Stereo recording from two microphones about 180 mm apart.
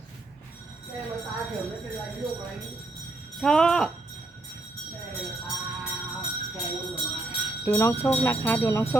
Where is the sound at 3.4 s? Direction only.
5° left (ahead or behind).